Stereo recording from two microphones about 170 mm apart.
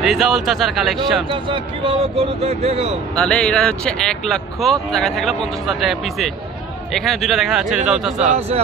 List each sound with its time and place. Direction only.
0.0 s speech: centre (ahead or behind)
1.3 s speech: 30° right (ahead or behind)
3.2 s speech: 5° left (ahead or behind)
8.2 s speech: 40° right (ahead or behind)